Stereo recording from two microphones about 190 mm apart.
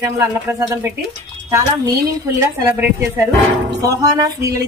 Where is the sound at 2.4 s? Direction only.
15° right (ahead or behind).